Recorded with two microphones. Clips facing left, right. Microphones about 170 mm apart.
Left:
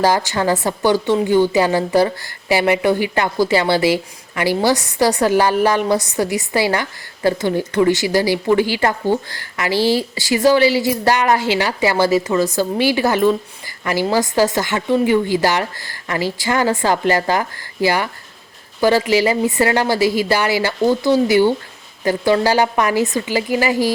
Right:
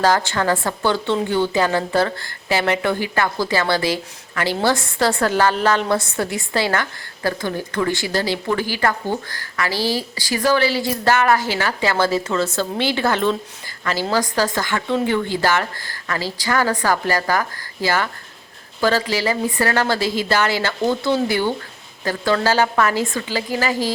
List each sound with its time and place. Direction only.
0.3 s a woman's voice: 15° left (ahead or behind)